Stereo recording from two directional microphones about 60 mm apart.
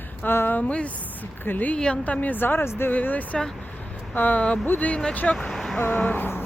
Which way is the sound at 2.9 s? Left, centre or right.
Left.